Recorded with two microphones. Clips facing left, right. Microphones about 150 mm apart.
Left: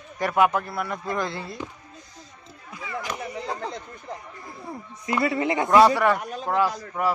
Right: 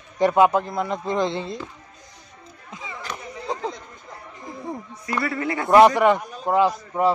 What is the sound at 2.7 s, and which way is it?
Chop, 20° right (ahead or behind).